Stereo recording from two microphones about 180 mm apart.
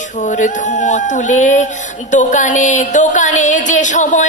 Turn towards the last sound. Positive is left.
turn(degrees=45)  # may be behind; listen again after turning